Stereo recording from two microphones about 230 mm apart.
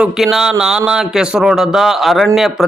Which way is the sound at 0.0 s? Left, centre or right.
Centre.